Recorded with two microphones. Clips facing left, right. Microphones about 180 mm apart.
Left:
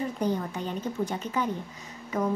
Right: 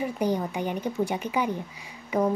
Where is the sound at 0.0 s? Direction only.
10° right (ahead or behind).